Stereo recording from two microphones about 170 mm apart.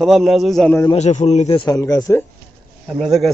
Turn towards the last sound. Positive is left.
turn(degrees=0)  # may be behind; listen again after turning